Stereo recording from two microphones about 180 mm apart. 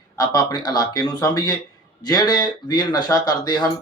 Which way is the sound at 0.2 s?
20° left (ahead or behind).